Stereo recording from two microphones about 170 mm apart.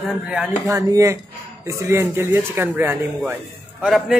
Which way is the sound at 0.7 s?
20° right (ahead or behind).